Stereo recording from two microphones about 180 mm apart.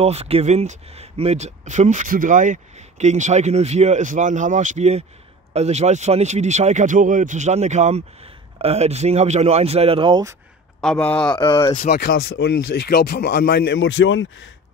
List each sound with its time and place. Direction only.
0.0 s speech: 35° right (ahead or behind)
10.8 s a man's voice: 5° left (ahead or behind)
11.3 s speech: 20° left (ahead or behind)
11.8 s speech: 60° left (ahead or behind); by 14.2 s 90° left